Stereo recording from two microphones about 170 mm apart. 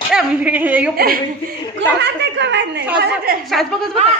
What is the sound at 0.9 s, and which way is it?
Speech, 60° right (ahead or behind).